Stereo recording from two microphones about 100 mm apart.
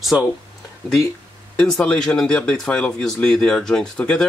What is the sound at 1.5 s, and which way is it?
Speech, 10° left (ahead or behind).